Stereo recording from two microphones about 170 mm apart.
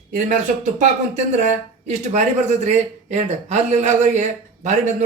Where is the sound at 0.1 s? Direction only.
50° right (ahead or behind).